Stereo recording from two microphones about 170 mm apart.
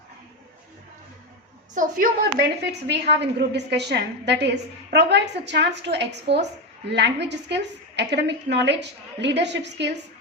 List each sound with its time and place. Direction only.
1.7 s a woman's voice: 50° right (ahead or behind)
2.6 s a woman's voice: 85° right